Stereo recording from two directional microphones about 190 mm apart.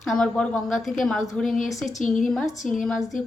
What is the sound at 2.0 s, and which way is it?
Speech, 40° left (ahead or behind).